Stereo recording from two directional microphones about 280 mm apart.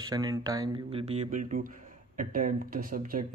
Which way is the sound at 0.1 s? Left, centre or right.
Centre.